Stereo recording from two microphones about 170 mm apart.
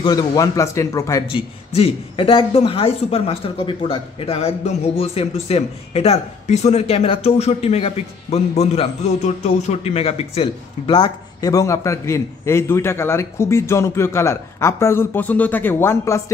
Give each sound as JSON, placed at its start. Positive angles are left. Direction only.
{"t": 0.0, "sound": "speech", "side_deg": 25}
{"t": 1.3, "sound": "speech", "side_deg": 35}